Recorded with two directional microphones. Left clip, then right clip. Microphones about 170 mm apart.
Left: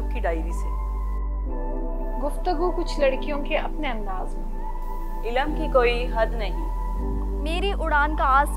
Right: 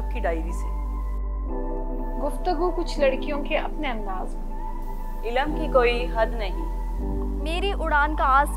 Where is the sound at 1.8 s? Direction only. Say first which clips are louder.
Left 3 dB; centre (ahead or behind).